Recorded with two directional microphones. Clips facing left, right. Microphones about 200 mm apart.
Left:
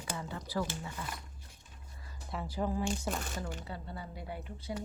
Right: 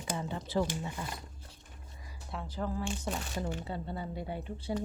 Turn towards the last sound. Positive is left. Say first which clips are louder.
# right 4 dB
turn(degrees=-30)  # may be behind; listen again after turning